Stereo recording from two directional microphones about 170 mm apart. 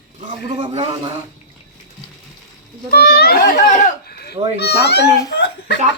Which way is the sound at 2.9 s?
70° left (ahead or behind).